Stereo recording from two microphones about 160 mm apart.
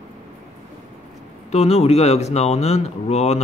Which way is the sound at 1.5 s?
40° left (ahead or behind).